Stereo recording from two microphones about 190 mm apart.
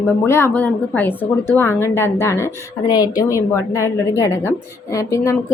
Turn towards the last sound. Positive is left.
turn(degrees=15)  # may be behind; listen again after turning